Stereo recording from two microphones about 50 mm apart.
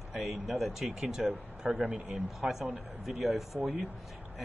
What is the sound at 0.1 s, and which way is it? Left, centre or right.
Speech, centre.